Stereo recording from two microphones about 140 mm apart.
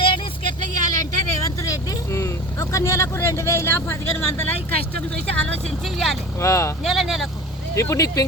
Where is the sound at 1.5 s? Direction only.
25° left (ahead or behind).